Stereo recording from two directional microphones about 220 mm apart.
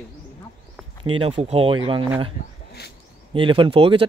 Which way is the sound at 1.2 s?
25° right (ahead or behind).